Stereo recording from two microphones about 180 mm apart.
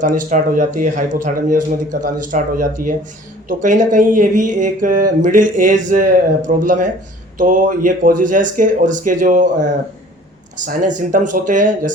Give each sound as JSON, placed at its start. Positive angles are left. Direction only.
{"t": 0.0, "sound": "speech", "side_deg": -45}
{"t": 10.7, "sound": "speech", "side_deg": -45}